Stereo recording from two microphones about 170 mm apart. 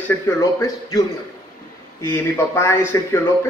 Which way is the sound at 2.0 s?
15° left (ahead or behind).